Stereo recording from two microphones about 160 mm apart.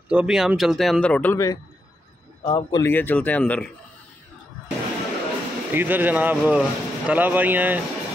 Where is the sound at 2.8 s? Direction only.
15° left (ahead or behind).